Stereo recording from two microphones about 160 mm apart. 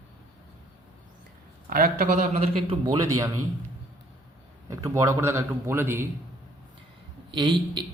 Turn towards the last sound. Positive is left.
turn(degrees=-30)  # may be behind; listen again after turning